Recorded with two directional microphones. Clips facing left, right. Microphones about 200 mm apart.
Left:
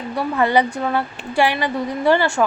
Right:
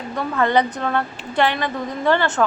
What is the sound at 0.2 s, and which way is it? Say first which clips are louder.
A woman's voice: left 1 dB; 10° left (ahead or behind).